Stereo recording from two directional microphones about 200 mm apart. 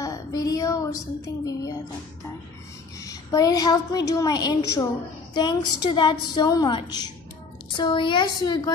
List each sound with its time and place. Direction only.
0.0 s a sound: 20° left (ahead or behind)
1.4 s music: 15° left (ahead or behind)
3.0 s a woman's voice: 15° left (ahead or behind)